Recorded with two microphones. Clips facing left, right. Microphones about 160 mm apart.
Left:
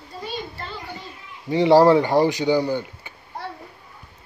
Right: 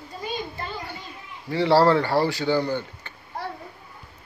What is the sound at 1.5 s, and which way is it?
Speech, 15° left (ahead or behind).